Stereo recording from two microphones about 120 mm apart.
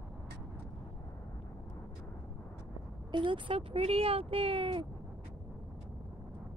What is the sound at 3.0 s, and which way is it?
Speech, 40° right (ahead or behind).